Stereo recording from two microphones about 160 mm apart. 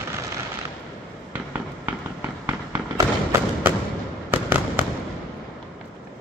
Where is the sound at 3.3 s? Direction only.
15° right (ahead or behind).